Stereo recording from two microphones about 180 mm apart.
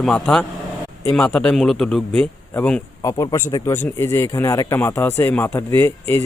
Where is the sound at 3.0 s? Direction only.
20° left (ahead or behind).